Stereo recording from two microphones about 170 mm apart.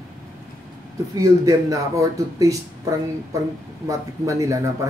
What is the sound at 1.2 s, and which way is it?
Speech, 20° right (ahead or behind).